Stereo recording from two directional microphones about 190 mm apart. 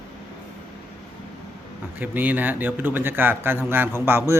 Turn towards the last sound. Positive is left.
turn(degrees=-10)  # may be behind; listen again after turning